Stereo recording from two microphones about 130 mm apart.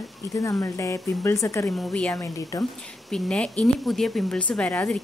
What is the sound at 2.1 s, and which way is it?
Speech, 25° left (ahead or behind).